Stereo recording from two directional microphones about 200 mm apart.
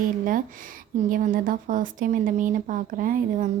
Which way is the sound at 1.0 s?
45° right (ahead or behind).